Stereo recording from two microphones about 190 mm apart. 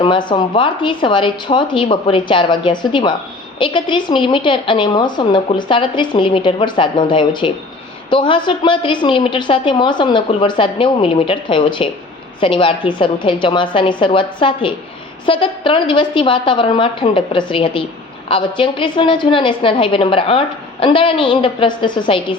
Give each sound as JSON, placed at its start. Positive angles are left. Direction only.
{"t": 0.0, "sound": "a woman's voice", "side_deg": 25}